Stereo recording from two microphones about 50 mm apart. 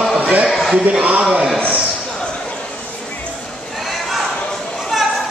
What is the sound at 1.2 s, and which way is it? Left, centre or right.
Speech, centre.